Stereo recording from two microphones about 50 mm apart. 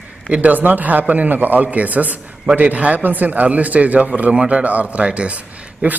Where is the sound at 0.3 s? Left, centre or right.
Right.